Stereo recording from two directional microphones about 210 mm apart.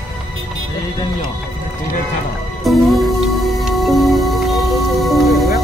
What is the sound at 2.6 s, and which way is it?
Music, centre (ahead or behind).